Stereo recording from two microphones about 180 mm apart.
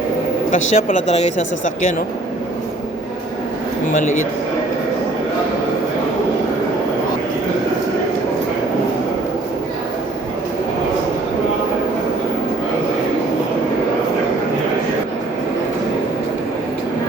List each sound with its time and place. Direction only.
0.7 s speech: 35° left (ahead or behind)